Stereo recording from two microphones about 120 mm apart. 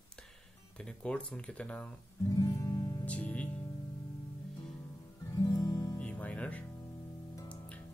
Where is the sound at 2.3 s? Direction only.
30° left (ahead or behind).